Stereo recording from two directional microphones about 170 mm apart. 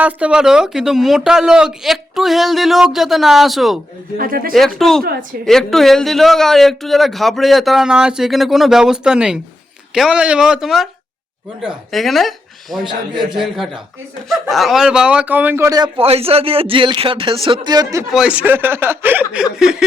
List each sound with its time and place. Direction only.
0.0 s a man's voice: 5° right (ahead or behind)
4.2 s speech: 60° right (ahead or behind)
4.5 s a man's voice: centre (ahead or behind); by 15.9 s 20° right (ahead or behind)
16.0 s speech: 35° right (ahead or behind)
18.1 s a man's voice: 5° right (ahead or behind)